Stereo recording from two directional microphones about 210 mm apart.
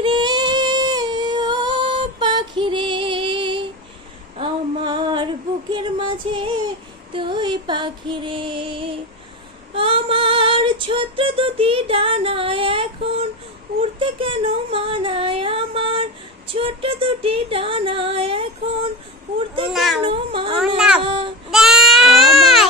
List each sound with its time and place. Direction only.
0.0 s singing: 20° right (ahead or behind)
4.4 s female singing: 20° right (ahead or behind)
7.1 s music: 25° right (ahead or behind)
9.8 s female singing: 25° right (ahead or behind)
13.7 s a sound: 25° right (ahead or behind)
16.5 s female singing: 25° right (ahead or behind)
19.7 s a sound: centre (ahead or behind)
20.0 s cat: 25° right (ahead or behind)
20.5 s speech: 5° right (ahead or behind)
21.0 s child singing: 25° right (ahead or behind)
21.5 s baby cry: centre (ahead or behind)